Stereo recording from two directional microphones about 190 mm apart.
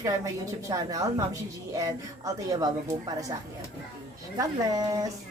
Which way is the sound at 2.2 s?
20° right (ahead or behind).